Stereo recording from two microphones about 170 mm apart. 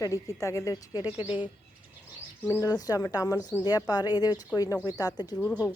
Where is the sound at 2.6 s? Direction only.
20° left (ahead or behind).